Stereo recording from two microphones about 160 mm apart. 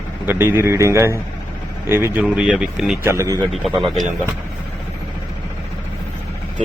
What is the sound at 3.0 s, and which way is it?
Speech, 20° right (ahead or behind).